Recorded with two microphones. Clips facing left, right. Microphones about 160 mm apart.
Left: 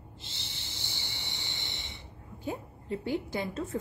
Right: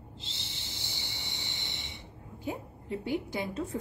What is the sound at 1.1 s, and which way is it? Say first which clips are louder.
Cricket: even; 20° right (ahead or behind).